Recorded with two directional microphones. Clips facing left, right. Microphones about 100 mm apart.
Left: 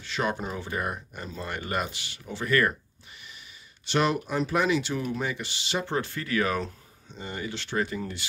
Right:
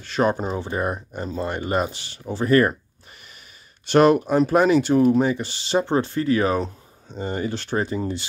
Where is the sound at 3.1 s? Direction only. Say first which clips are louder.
Right 1 dB; 45° right (ahead or behind); by 6.7 s 25° right (ahead or behind).